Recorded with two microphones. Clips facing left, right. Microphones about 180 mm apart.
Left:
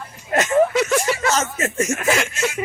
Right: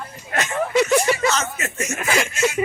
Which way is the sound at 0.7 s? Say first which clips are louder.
Right 2 dB; centre (ahead or behind).